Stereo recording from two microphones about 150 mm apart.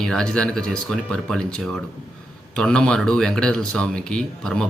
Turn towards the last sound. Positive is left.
turn(degrees=5)  # may be behind; listen again after turning